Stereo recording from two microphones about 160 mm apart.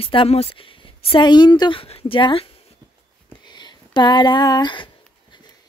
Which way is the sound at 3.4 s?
30° left (ahead or behind).